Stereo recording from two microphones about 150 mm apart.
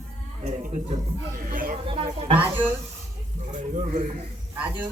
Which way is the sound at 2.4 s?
10° right (ahead or behind).